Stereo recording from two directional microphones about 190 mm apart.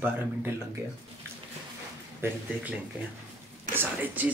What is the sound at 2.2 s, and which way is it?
Speech, 10° right (ahead or behind).